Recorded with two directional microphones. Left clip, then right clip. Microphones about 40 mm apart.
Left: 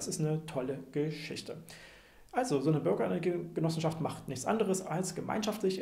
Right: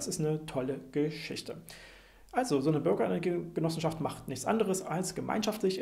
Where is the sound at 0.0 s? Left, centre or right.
Right.